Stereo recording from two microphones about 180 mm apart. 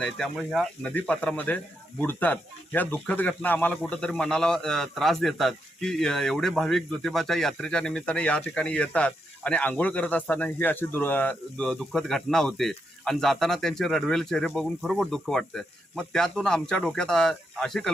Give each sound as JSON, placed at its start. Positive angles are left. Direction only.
{"t": 0.0, "sound": "speech", "side_deg": 0}